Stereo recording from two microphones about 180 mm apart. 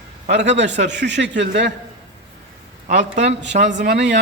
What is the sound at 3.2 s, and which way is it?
Speech, 75° right (ahead or behind).